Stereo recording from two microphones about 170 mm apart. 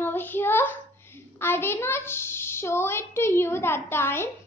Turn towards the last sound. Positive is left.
turn(degrees=15)  # may be behind; listen again after turning